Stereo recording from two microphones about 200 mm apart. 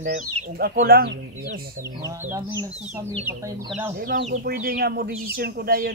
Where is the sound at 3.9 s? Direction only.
50° right (ahead or behind).